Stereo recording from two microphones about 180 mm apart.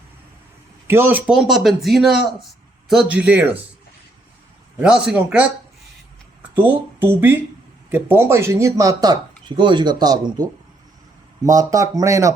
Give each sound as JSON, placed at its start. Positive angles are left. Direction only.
{"t": 0.9, "sound": "a man's voice", "side_deg": -10}
{"t": 4.8, "sound": "a man's voice", "side_deg": -5}
{"t": 6.6, "sound": "speech", "side_deg": -10}